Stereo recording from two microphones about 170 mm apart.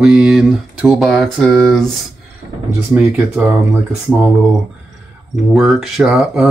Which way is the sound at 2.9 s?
10° right (ahead or behind).